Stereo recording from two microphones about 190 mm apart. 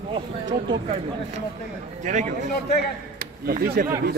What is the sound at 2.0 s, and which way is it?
Speech, 40° right (ahead or behind).